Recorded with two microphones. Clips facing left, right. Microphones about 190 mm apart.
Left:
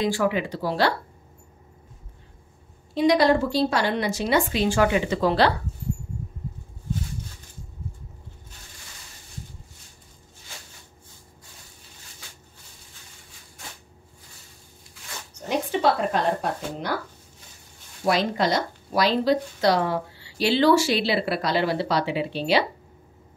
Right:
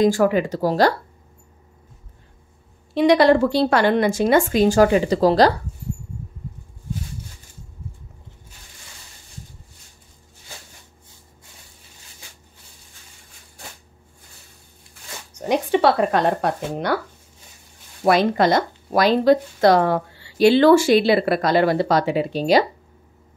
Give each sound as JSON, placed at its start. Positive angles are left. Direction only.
{"t": 0.0, "sound": "speech", "side_deg": -45}
{"t": 2.9, "sound": "speech", "side_deg": -65}
{"t": 15.4, "sound": "speech", "side_deg": -65}
{"t": 18.0, "sound": "speech", "side_deg": -55}